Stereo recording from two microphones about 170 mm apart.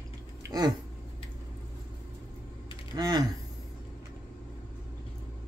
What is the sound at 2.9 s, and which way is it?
Speech, 25° right (ahead or behind).